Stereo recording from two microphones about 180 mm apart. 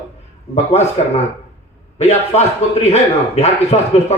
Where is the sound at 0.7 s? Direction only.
35° left (ahead or behind).